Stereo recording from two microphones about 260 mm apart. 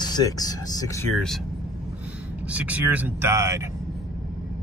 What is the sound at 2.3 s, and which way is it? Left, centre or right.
Speech, centre.